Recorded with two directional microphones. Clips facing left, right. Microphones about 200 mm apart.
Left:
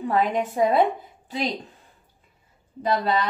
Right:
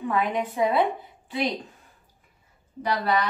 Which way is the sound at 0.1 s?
45° left (ahead or behind).